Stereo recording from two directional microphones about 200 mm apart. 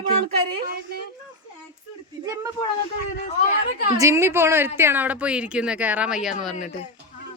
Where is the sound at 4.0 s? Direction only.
15° right (ahead or behind).